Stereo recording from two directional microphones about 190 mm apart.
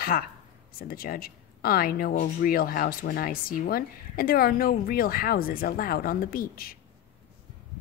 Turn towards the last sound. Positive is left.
turn(degrees=50)  # may be behind; listen again after turning